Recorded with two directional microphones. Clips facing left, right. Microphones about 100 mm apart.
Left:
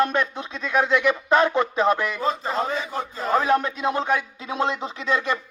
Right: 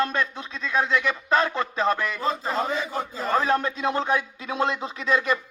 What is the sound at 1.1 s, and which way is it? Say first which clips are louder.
Speech: left 4 dB; 20° left (ahead or behind).